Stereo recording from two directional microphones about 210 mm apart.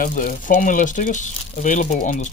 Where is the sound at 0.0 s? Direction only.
40° left (ahead or behind).